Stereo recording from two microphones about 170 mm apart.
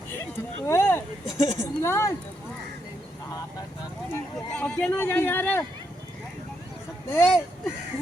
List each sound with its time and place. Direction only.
0.1 s a sound: 15° left (ahead or behind)
1.5 s speech: 15° left (ahead or behind)
4.1 s speech: 10° left (ahead or behind)
7.1 s speech: 15° left (ahead or behind)